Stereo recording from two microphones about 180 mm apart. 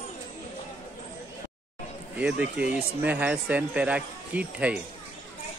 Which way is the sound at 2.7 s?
10° right (ahead or behind).